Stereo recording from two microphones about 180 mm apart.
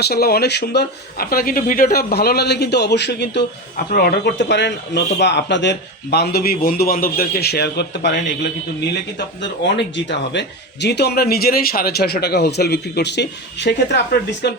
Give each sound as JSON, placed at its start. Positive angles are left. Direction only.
{"t": 0.0, "sound": "a man's voice", "side_deg": 60}
{"t": 9.6, "sound": "a man's voice", "side_deg": 75}